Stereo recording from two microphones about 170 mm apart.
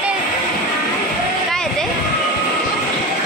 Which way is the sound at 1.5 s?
Centre (ahead or behind).